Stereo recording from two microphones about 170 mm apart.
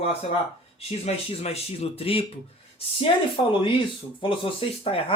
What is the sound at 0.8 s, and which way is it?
Speech, 40° left (ahead or behind).